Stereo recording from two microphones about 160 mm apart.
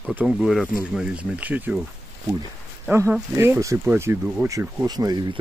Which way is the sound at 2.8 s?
10° right (ahead or behind).